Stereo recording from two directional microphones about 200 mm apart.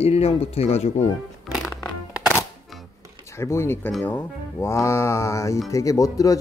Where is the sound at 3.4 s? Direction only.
15° left (ahead or behind).